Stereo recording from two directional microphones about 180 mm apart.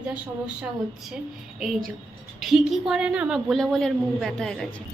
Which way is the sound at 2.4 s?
Centre (ahead or behind).